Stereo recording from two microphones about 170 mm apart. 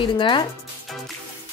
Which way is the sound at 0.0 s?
30° left (ahead or behind).